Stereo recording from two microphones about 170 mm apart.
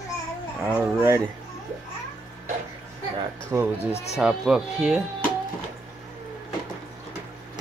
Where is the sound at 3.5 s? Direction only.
15° right (ahead or behind).